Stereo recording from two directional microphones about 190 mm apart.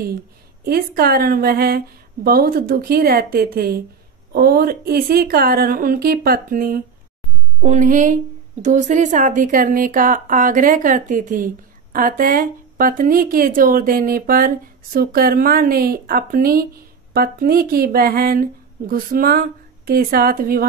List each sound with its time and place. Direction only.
0.7 s speech: 50° right (ahead or behind)
7.6 s speech: 40° right (ahead or behind)